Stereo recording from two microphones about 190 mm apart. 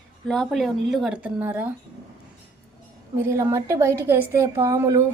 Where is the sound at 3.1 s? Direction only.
15° right (ahead or behind).